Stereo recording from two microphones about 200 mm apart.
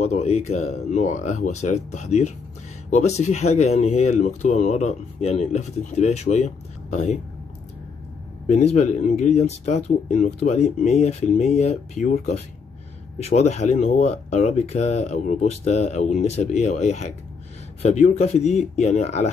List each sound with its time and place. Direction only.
0.0 s speech: 35° left (ahead or behind)
8.5 s speech: 35° left (ahead or behind)